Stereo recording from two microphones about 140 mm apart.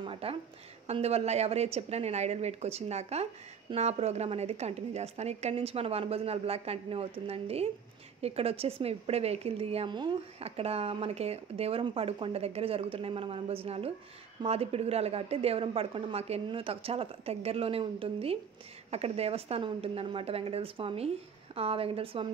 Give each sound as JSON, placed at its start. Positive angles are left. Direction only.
{"t": 0.0, "sound": "a woman's voice", "side_deg": -40}
{"t": 9.8, "sound": "speech", "side_deg": -35}
{"t": 10.4, "sound": "a woman's voice", "side_deg": -45}